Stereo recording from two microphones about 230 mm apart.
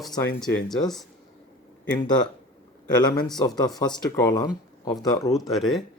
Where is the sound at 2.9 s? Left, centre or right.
Centre.